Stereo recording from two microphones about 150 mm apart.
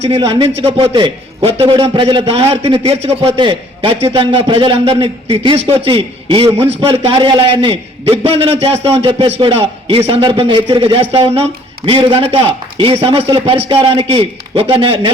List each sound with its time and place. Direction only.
0.0 s a man's voice: 40° right (ahead or behind)
3.3 s a man's voice: 35° right (ahead or behind)